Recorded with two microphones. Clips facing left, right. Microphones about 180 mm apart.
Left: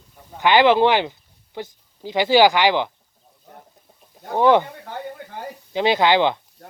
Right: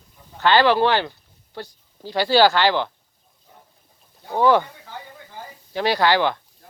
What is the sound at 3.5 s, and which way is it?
Chicken, 65° left (ahead or behind).